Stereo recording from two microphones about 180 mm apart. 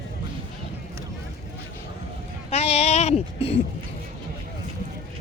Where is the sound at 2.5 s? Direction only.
35° left (ahead or behind).